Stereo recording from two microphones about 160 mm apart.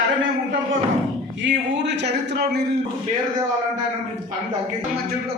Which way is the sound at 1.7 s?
90° right.